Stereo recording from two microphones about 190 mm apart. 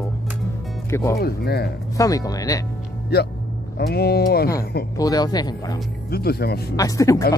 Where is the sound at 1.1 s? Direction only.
55° left (ahead or behind).